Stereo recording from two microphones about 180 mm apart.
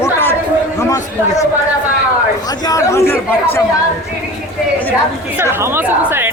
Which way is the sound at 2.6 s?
20° left (ahead or behind).